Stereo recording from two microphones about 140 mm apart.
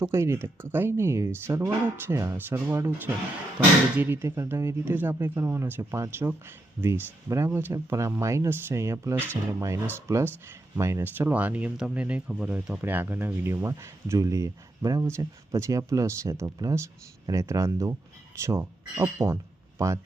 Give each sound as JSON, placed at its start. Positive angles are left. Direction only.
{"t": 0.0, "sound": "speech", "side_deg": -20}
{"t": 3.9, "sound": "speech", "side_deg": -15}